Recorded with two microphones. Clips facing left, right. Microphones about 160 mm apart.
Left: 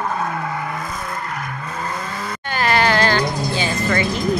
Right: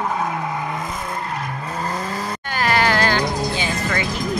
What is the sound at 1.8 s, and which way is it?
Vehicle, 35° right (ahead or behind).